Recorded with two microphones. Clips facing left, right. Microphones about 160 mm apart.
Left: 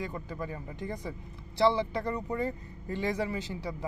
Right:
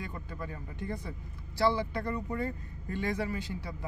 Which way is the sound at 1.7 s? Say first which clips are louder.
Left 2 dB; 20° left (ahead or behind).